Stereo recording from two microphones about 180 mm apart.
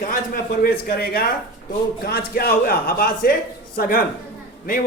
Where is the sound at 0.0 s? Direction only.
50° left (ahead or behind).